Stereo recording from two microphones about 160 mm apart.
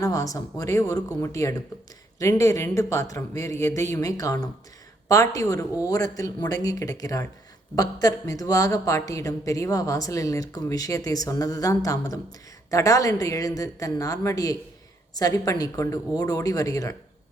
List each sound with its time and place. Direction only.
0.0 s speech: 20° left (ahead or behind)